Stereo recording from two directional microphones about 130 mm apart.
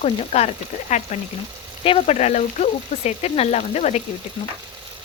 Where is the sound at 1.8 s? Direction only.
45° left (ahead or behind); by 4.0 s 65° left (ahead or behind).